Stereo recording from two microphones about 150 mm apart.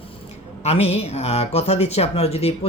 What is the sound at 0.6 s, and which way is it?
Speech, 45° left (ahead or behind).